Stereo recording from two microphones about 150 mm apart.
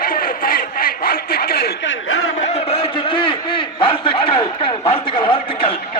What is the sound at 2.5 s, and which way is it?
A man's voice, 40° left (ahead or behind).